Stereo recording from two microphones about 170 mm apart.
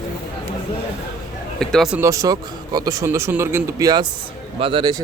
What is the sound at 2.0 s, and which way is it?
Speech, 20° right (ahead or behind).